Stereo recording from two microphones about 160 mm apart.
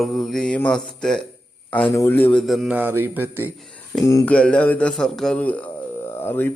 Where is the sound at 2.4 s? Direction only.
Centre (ahead or behind).